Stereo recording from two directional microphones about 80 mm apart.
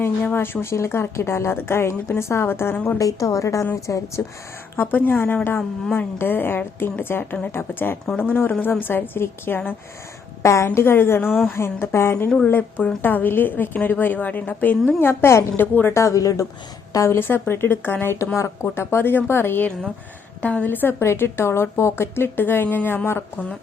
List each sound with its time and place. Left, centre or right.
0.0 s a woman's voice: left
3.0 s a woman's voice: left
4.8 s a woman's voice: left
16.0 s a woman's voice: left